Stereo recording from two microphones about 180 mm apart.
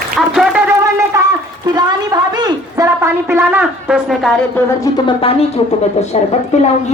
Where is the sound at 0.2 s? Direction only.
5° right (ahead or behind).